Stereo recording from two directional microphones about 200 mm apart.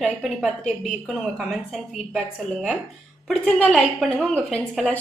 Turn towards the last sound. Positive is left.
turn(degrees=5)  # may be behind; listen again after turning